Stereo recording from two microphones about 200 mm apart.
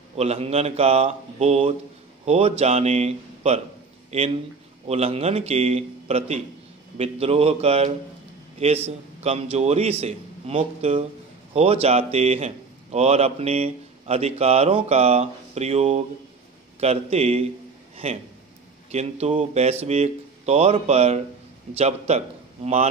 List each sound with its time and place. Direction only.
0.1 s a man's voice: 30° right (ahead or behind)